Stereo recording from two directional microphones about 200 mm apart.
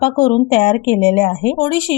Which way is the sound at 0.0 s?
25° left (ahead or behind).